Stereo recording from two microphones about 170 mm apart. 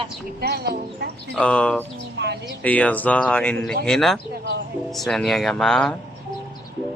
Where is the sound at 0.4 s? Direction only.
65° right (ahead or behind).